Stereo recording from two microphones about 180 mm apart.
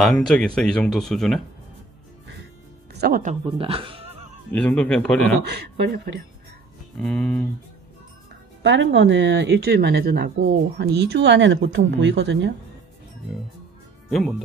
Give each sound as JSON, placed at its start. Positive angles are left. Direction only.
{"t": 0.0, "sound": "speech", "side_deg": 5}
{"t": 2.9, "sound": "music", "side_deg": -65}
{"t": 3.5, "sound": "speech", "side_deg": -30}
{"t": 4.5, "sound": "speech", "side_deg": 5}
{"t": 5.4, "sound": "speech", "side_deg": -60}
{"t": 7.0, "sound": "speech", "side_deg": 0}
{"t": 8.6, "sound": "speech", "side_deg": -90}